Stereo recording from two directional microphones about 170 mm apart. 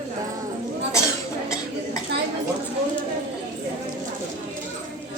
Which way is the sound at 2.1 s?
75° right (ahead or behind).